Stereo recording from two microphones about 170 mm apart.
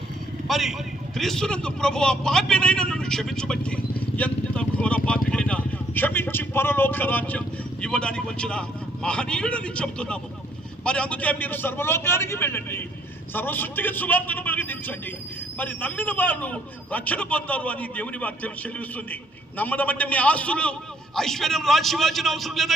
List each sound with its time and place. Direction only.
0.4 s a man's voice: centre (ahead or behind)